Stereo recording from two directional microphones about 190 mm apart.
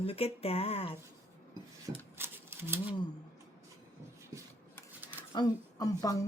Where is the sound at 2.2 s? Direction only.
10° right (ahead or behind).